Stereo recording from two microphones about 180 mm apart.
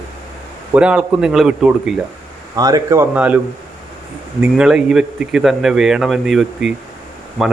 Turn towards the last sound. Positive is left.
turn(degrees=0)  # may be behind; listen again after turning